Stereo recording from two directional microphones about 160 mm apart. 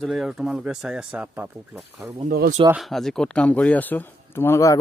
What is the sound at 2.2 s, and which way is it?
Speech, 65° right (ahead or behind).